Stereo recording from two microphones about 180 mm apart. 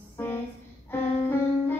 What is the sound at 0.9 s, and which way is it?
Music, 10° left (ahead or behind).